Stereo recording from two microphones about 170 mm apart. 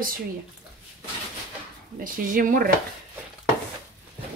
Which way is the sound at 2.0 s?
55° right (ahead or behind).